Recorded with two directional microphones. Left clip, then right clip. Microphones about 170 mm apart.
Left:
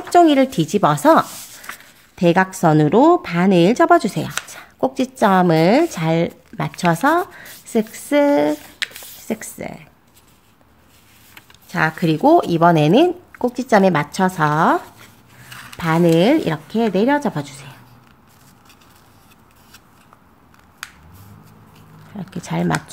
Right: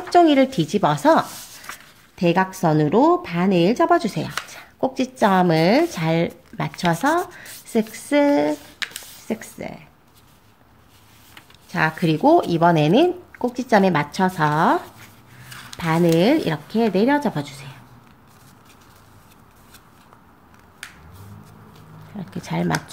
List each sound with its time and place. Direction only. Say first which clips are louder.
0.1 s speech: left 2 dB; 20° left (ahead or behind)
11.7 s speech: left 2 dB; 20° left (ahead or behind)
22.1 s speech: left 2 dB; 25° left (ahead or behind)